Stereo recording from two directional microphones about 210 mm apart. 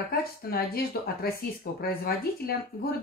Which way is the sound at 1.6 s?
45° left (ahead or behind).